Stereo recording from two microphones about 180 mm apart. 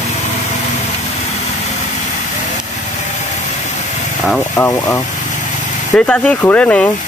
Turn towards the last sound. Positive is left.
turn(degrees=10)  # may be behind; listen again after turning